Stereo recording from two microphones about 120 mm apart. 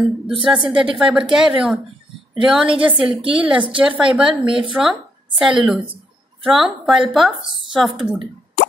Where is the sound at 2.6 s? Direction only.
45° right (ahead or behind).